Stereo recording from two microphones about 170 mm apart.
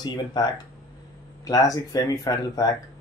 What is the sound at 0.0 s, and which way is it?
Speech, 25° left (ahead or behind).